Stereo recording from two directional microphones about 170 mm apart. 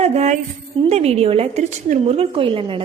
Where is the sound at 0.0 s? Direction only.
40° right (ahead or behind).